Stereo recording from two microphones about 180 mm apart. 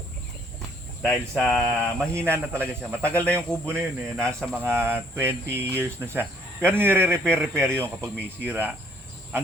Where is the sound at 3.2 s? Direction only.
5° left (ahead or behind).